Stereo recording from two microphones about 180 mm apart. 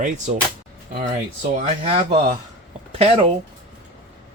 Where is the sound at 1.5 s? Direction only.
40° right (ahead or behind).